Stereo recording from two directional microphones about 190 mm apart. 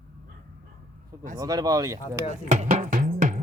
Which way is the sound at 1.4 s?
20° right (ahead or behind).